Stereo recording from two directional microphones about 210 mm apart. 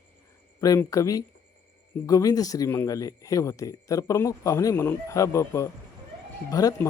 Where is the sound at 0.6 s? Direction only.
15° left (ahead or behind).